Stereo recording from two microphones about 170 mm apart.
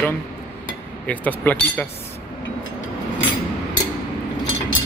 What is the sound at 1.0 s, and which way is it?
Speech, 10° left (ahead or behind).